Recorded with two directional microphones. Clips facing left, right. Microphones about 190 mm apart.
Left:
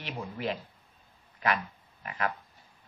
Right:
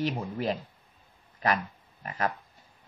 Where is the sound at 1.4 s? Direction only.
40° right (ahead or behind).